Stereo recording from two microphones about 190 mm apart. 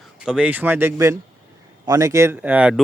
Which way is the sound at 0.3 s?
5° right (ahead or behind).